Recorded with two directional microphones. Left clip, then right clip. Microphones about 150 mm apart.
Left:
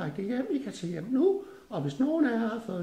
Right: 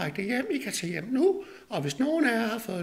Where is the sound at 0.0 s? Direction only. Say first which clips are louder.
Right 3 dB; 10° right (ahead or behind).